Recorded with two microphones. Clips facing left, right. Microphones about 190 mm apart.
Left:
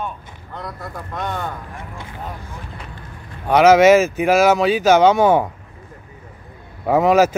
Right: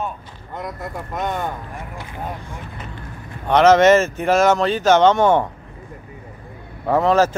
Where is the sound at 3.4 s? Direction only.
10° left (ahead or behind).